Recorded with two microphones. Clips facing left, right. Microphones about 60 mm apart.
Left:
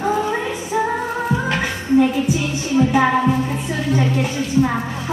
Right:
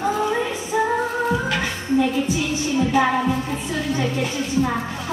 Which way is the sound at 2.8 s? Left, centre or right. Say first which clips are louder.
Left 4 dB; left.